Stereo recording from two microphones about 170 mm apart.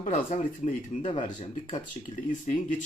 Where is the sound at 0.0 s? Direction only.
45° left (ahead or behind).